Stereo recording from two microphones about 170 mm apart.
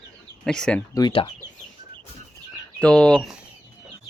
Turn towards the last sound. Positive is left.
turn(degrees=5)  # may be behind; listen again after turning